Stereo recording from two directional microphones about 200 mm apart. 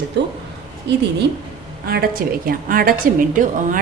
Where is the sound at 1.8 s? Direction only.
50° right (ahead or behind).